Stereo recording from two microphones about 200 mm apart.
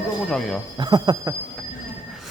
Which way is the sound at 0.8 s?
20° right (ahead or behind).